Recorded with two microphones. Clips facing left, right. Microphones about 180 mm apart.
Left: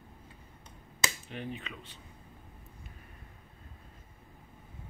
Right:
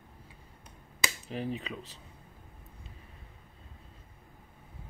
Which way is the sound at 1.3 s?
35° right (ahead or behind).